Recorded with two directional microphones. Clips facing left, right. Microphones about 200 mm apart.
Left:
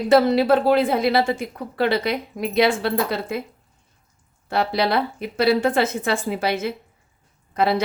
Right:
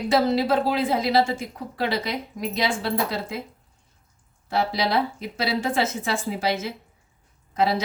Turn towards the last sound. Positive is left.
turn(degrees=60)  # may be behind; listen again after turning